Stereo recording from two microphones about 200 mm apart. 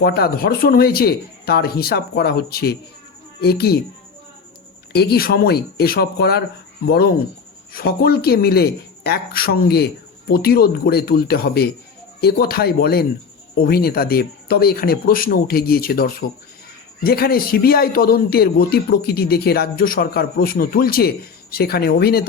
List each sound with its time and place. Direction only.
0.0 s speech: 50° left (ahead or behind)
4.9 s speech: 55° left (ahead or behind)